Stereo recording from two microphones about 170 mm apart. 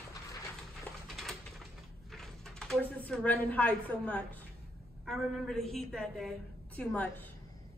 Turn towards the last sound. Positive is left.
turn(degrees=10)  # may be behind; listen again after turning